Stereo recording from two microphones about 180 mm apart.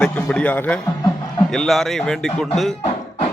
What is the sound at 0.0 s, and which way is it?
A man's voice, 5° left (ahead or behind).